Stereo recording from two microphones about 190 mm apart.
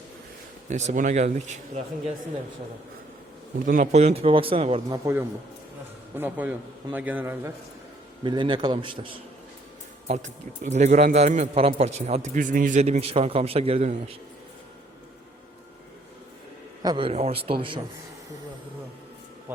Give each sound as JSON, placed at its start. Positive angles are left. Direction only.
{"t": 0.7, "sound": "a man's voice", "side_deg": -40}
{"t": 3.7, "sound": "a man's voice", "side_deg": -40}
{"t": 4.9, "sound": "a man's voice", "side_deg": -15}
{"t": 8.2, "sound": "speech", "side_deg": -25}
{"t": 10.1, "sound": "a man's voice", "side_deg": -40}
{"t": 16.8, "sound": "speech", "side_deg": -25}
{"t": 19.5, "sound": "a man's voice", "side_deg": -10}